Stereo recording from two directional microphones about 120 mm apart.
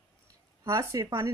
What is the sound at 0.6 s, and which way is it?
Speech, 25° right (ahead or behind).